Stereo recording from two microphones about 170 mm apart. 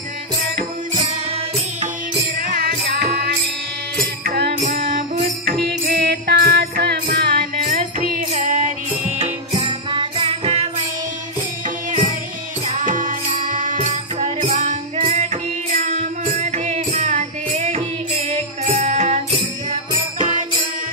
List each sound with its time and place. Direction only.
0.6 s music: 45° right (ahead or behind)
2.3 s music: 55° right (ahead or behind)
4.2 s music: 65° right (ahead or behind)
4.6 s music: 50° right (ahead or behind)
5.7 s music: 70° right (ahead or behind)
7.6 s music: 45° right (ahead or behind)
9.5 s music: 25° right (ahead or behind)
12.6 s music: 45° right (ahead or behind)